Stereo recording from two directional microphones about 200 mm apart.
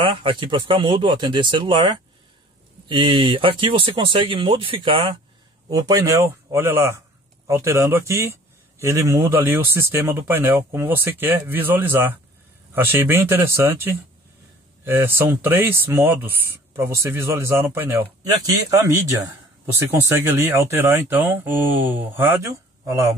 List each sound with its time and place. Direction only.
0.0 s speech: 25° right (ahead or behind)